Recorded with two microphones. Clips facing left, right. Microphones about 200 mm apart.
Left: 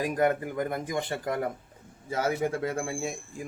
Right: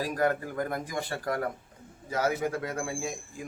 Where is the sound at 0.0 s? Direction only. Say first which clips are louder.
Left 2 dB; 20° left (ahead or behind).